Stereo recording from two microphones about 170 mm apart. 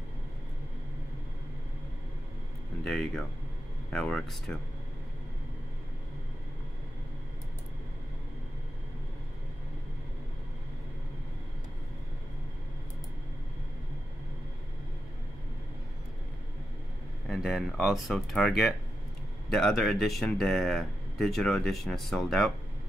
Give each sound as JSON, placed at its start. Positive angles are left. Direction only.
{"t": 2.8, "sound": "speech", "side_deg": 0}
{"t": 17.3, "sound": "speech", "side_deg": 0}
{"t": 19.5, "sound": "speech", "side_deg": 5}